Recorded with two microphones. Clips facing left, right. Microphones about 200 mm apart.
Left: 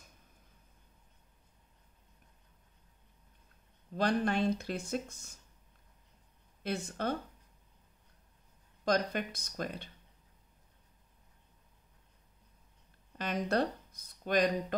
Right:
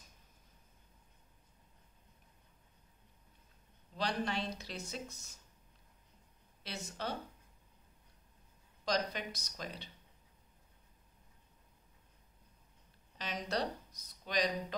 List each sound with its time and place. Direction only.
3.9 s speech: 50° left (ahead or behind)
6.6 s speech: 50° left (ahead or behind)
8.8 s speech: 50° left (ahead or behind)
13.2 s speech: 55° left (ahead or behind)